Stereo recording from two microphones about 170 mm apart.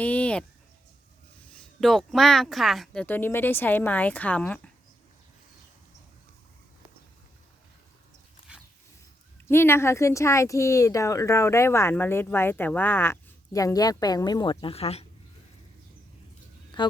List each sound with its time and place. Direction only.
0.0 s a sound: 10° left (ahead or behind)
1.8 s speech: centre (ahead or behind)
9.5 s speech: 15° left (ahead or behind); by 15.0 s 35° left (ahead or behind)
16.8 s speech: 30° left (ahead or behind)